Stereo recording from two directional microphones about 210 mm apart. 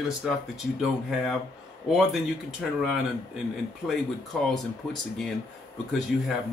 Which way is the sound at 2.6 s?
Centre (ahead or behind).